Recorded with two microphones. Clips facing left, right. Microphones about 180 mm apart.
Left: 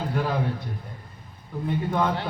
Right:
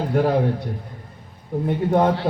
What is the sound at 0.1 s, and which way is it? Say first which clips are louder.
Speech: right 9 dB; 45° right (ahead or behind).